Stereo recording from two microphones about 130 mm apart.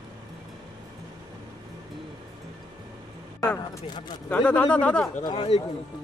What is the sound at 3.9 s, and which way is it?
Speech, 35° left (ahead or behind).